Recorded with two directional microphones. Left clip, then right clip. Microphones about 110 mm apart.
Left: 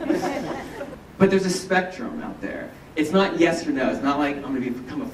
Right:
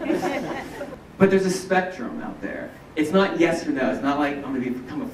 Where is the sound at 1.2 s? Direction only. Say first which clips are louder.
Right 1 dB; 20° left (ahead or behind).